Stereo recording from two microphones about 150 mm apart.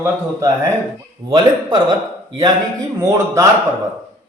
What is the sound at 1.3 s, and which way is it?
Speech, 30° right (ahead or behind).